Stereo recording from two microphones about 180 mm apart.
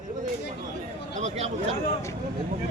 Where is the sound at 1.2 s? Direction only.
35° right (ahead or behind).